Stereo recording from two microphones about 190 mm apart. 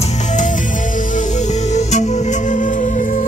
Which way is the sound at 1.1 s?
40° left (ahead or behind).